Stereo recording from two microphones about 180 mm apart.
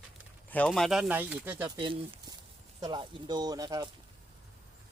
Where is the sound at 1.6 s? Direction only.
25° right (ahead or behind).